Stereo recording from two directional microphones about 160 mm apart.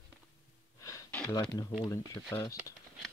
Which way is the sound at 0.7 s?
20° left (ahead or behind).